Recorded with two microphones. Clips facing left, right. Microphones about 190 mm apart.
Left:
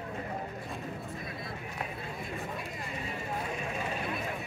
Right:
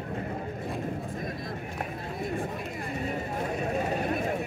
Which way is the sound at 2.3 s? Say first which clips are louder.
Right 6 dB; 50° right (ahead or behind).